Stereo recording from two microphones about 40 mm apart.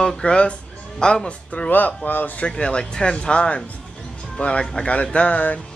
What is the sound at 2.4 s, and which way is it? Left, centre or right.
Speech, left.